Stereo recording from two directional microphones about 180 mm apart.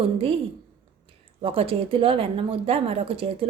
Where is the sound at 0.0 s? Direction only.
30° right (ahead or behind).